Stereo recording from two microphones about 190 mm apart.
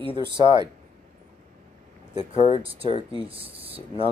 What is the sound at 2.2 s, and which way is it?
Speech, 35° left (ahead or behind).